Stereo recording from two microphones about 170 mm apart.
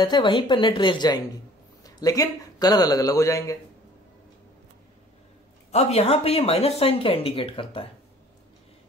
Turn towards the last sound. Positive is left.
turn(degrees=30)  # may be behind; listen again after turning